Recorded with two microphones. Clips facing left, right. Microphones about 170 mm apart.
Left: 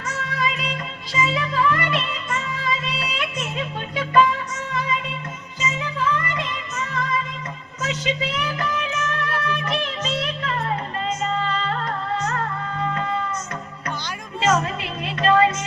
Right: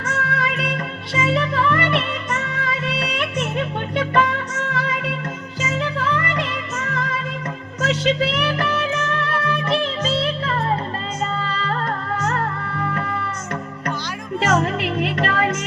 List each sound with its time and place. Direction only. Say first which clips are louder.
0.1 s music: right 2 dB; 60° right (ahead or behind)
6.7 s music: even; 55° right (ahead or behind)
7.9 s music: right 6 dB; 65° right (ahead or behind)
8.8 s music: right 4 dB; 35° right (ahead or behind)
14.6 s music: right 7 dB; 65° right (ahead or behind)